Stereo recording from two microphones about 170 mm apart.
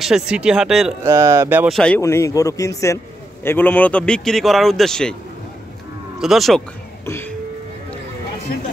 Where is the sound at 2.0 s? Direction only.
20° left (ahead or behind).